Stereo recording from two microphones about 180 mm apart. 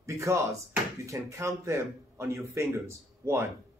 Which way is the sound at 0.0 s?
15° right (ahead or behind).